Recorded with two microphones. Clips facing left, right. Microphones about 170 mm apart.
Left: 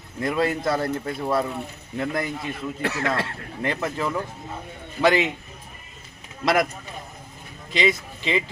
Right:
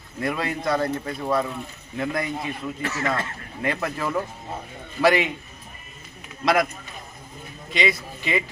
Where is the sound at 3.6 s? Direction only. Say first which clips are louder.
Even; 25° left (ahead or behind).